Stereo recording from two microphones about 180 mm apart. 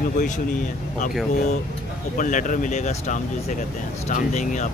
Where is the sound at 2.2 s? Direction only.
45° left (ahead or behind).